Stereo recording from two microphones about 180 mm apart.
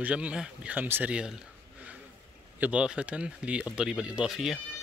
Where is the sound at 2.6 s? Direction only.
5° right (ahead or behind).